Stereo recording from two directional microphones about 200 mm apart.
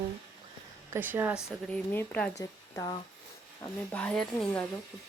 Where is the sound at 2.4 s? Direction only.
20° left (ahead or behind).